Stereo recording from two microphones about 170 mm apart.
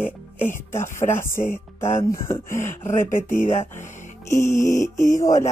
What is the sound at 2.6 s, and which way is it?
Speech, 45° left (ahead or behind).